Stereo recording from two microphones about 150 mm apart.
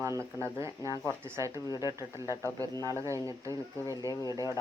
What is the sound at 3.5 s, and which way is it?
Speech, 25° left (ahead or behind).